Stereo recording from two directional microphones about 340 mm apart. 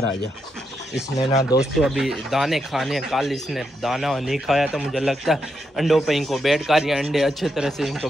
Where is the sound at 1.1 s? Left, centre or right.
Centre.